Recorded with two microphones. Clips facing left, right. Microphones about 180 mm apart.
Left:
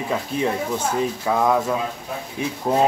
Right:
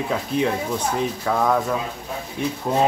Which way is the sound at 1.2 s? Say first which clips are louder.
Left 1 dB; 5° left (ahead or behind).